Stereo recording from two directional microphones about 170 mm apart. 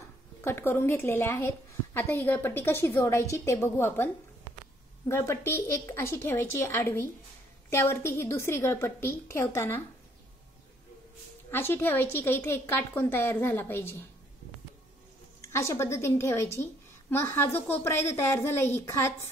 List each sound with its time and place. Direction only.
0.4 s a woman's voice: 15° left (ahead or behind)
11.5 s a woman's voice: 15° left (ahead or behind)
15.4 s a woman's voice: 15° left (ahead or behind)